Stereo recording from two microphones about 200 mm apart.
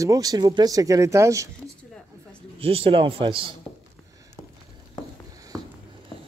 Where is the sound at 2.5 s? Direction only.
30° right (ahead or behind).